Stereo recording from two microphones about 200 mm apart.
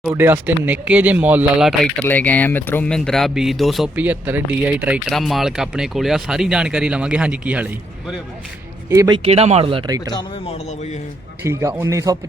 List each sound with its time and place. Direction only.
0.0 s speech: 10° right (ahead or behind)
8.9 s speech: 20° right (ahead or behind)
10.1 s speech: 20° left (ahead or behind)
11.4 s a man's voice: 15° right (ahead or behind)